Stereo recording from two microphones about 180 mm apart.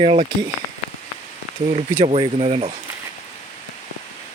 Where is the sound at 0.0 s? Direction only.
35° right (ahead or behind).